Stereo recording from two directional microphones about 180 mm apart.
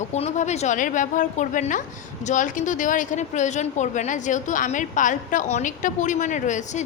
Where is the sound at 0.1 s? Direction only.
40° left (ahead or behind).